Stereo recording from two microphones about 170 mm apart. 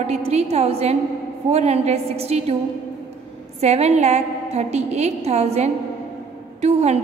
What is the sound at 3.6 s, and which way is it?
A woman's voice, 40° right (ahead or behind).